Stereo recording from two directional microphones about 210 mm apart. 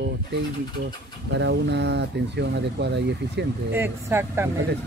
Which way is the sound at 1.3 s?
55° right (ahead or behind).